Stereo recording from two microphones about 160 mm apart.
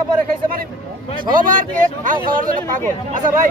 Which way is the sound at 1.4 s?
60° right (ahead or behind).